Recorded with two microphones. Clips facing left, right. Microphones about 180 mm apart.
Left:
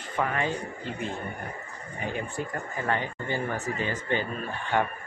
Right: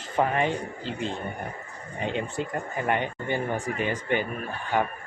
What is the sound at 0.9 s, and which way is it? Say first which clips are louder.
Speech: right 2 dB; 90° right.